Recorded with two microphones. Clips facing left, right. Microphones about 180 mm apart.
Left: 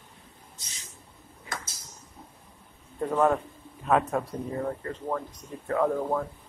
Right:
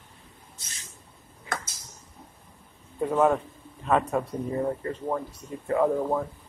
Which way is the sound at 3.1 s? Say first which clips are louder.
Right 1 dB; 5° right (ahead or behind).